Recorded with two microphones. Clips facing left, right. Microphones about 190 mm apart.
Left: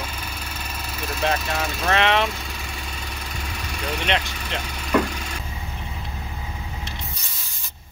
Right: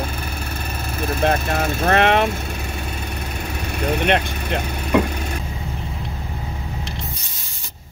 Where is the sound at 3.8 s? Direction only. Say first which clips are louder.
Right 6 dB; 55° right (ahead or behind).